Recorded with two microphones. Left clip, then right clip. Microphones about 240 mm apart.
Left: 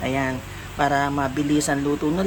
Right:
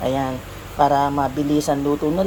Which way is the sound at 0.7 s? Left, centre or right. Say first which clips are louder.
Right 4 dB; centre.